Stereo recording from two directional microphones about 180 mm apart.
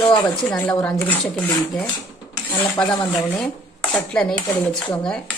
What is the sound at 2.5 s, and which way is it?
Speech, 15° left (ahead or behind).